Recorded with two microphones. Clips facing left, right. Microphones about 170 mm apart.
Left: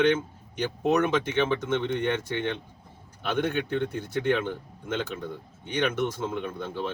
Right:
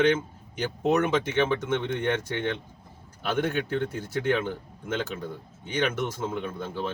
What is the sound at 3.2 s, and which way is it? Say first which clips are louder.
Speech: even; 5° right (ahead or behind).